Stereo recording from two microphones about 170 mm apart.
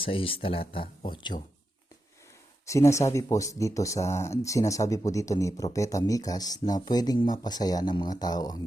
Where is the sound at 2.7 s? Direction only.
15° left (ahead or behind).